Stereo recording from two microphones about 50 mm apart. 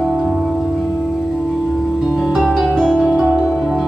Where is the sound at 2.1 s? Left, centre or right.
Centre.